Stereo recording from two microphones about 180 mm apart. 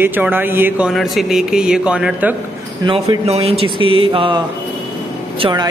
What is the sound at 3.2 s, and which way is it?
Speech, 35° right (ahead or behind).